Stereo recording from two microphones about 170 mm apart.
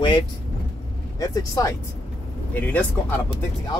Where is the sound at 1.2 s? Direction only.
20° left (ahead or behind).